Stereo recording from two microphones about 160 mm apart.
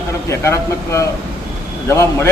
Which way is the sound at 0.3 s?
15° left (ahead or behind).